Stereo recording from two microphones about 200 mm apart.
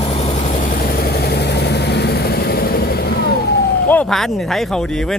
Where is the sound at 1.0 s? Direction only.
55° left (ahead or behind).